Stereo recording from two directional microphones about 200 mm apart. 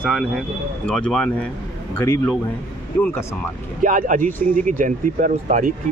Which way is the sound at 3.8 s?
40° right (ahead or behind).